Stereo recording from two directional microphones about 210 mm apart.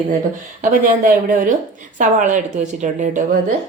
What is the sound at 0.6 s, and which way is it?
Speech, 40° right (ahead or behind).